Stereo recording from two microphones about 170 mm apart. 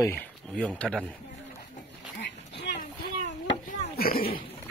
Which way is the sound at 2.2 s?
90° left.